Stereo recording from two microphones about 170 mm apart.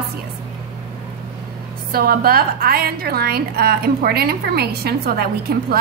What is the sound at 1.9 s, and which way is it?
A woman's voice, 65° right (ahead or behind).